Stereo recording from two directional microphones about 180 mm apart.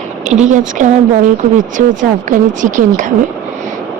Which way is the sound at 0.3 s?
40° right (ahead or behind).